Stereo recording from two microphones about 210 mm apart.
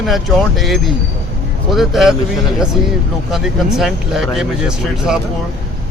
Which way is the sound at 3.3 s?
Centre (ahead or behind).